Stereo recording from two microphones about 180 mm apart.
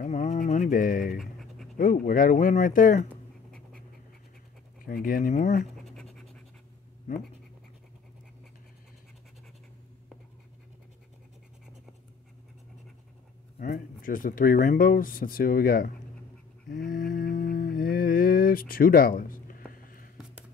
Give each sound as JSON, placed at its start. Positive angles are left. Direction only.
{"t": 0.0, "sound": "a sound", "side_deg": 40}
{"t": 1.2, "sound": "pant", "side_deg": 0}
{"t": 1.8, "sound": "speech", "side_deg": 50}
{"t": 3.1, "sound": "writing", "side_deg": 5}
{"t": 4.8, "sound": "speech", "side_deg": 50}
{"t": 7.1, "sound": "speech", "side_deg": 40}
{"t": 13.6, "sound": "speech", "side_deg": 50}
{"t": 16.6, "sound": "a sound", "side_deg": 50}
{"t": 19.7, "sound": "music", "side_deg": 50}